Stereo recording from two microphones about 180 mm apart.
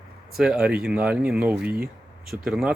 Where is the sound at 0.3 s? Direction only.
5° right (ahead or behind).